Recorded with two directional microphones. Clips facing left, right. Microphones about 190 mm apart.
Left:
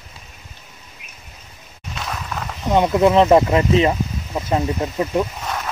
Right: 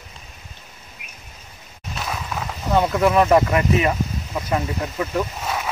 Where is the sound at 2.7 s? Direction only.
20° left (ahead or behind).